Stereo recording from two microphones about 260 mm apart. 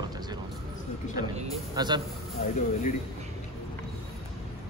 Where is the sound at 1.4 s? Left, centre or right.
Centre.